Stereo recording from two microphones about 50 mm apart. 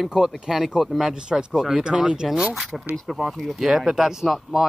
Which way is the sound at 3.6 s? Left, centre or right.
Centre.